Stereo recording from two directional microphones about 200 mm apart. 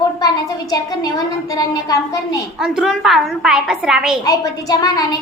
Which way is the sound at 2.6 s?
Centre (ahead or behind).